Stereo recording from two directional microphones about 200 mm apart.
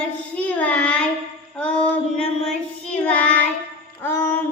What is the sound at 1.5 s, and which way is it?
Female singing, 5° left (ahead or behind).